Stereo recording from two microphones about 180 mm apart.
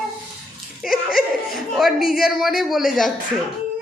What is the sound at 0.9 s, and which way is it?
Laughter, 55° left (ahead or behind).